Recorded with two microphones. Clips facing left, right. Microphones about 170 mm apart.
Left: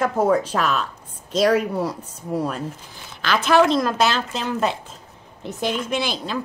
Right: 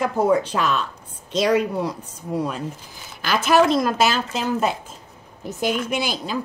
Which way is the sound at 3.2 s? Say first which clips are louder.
Even; 5° right (ahead or behind).